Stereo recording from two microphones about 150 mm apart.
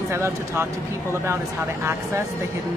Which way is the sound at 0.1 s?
15° right (ahead or behind).